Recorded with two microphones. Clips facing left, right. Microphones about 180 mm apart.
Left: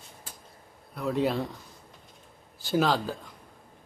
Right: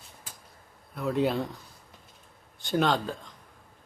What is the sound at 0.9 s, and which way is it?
Speech, centre (ahead or behind).